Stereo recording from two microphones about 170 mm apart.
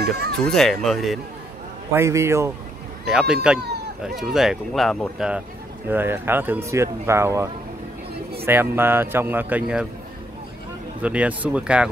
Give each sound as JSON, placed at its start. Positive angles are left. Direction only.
{"t": 0.0, "sound": "speech", "side_deg": -70}
{"t": 0.5, "sound": "speech", "side_deg": 0}
{"t": 2.0, "sound": "speech", "side_deg": -15}
{"t": 3.1, "sound": "speech", "side_deg": 0}
{"t": 5.9, "sound": "speech", "side_deg": -10}
{"t": 8.5, "sound": "speech", "side_deg": -15}
{"t": 11.0, "sound": "speech", "side_deg": -10}